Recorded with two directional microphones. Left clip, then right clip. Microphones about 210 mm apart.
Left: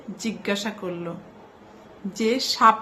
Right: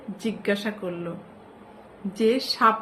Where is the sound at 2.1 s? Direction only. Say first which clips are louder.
Right 1 dB; 15° left (ahead or behind).